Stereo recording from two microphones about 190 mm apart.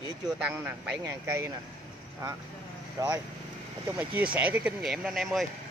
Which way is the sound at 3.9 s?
10° right (ahead or behind).